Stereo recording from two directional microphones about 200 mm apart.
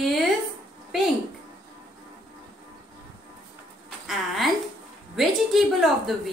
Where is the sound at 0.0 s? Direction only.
Centre (ahead or behind).